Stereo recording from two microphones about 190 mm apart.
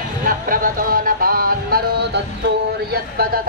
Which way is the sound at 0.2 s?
50° right (ahead or behind).